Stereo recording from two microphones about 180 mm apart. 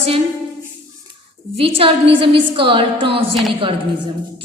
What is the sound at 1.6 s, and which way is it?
A woman's voice, 30° right (ahead or behind).